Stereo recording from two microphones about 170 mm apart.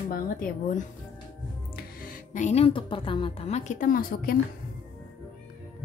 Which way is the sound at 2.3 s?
40° left (ahead or behind).